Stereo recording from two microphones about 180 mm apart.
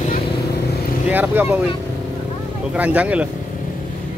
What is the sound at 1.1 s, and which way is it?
Speech, 10° right (ahead or behind).